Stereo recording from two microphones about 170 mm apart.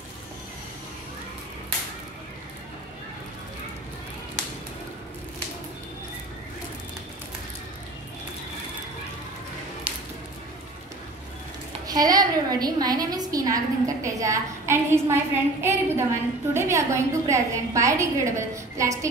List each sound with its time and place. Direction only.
11.9 s a woman's voice: 20° right (ahead or behind)